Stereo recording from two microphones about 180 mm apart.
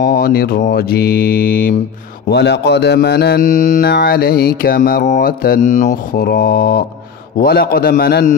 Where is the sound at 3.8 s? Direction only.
65° left (ahead or behind).